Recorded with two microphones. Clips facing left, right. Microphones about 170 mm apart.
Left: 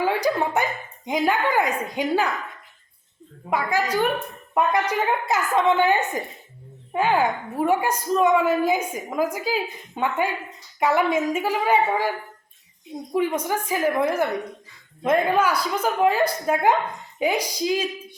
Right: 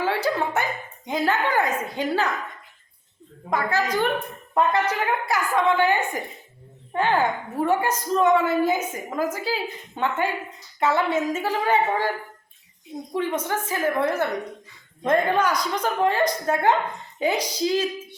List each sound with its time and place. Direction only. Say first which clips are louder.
0.0 s a sound: left 2 dB; 15° left (ahead or behind)
1.0 s a woman's voice: left 1 dB; 15° left (ahead or behind)
3.5 s a woman's voice: left 1 dB; 10° left (ahead or behind)